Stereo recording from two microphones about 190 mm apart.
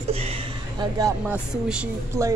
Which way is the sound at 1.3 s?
5° right (ahead or behind).